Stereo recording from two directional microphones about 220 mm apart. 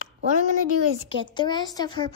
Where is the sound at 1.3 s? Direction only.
20° left (ahead or behind).